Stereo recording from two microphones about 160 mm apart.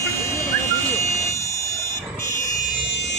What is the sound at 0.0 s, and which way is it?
Buzzer, 20° left (ahead or behind).